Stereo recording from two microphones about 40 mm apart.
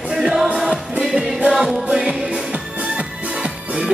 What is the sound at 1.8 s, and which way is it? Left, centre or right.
Music, right.